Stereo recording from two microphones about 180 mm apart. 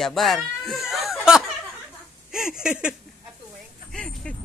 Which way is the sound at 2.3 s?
5° right (ahead or behind).